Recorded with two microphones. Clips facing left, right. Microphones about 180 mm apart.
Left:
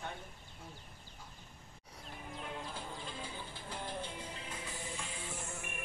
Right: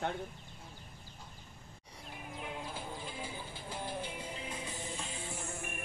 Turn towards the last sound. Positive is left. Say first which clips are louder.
# right 2 dB
turn(degrees=-20)  # may be behind; listen again after turning